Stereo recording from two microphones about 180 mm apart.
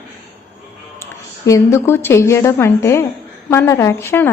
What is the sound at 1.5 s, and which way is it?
A woman's voice, 15° left (ahead or behind).